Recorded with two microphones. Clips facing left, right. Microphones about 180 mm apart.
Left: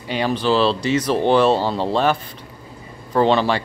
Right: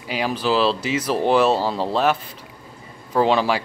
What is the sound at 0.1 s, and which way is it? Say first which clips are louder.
Speech: left 2 dB; 5° right (ahead or behind).